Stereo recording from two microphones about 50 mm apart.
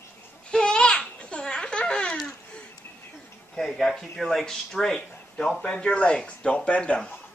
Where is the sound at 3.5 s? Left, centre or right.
Centre.